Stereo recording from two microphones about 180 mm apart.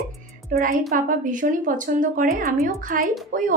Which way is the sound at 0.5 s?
50° right (ahead or behind).